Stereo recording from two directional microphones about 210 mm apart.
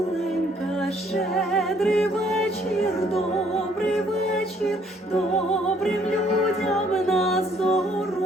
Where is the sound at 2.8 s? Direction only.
30° left (ahead or behind).